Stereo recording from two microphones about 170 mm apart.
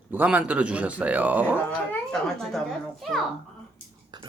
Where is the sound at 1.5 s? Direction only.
5° left (ahead or behind).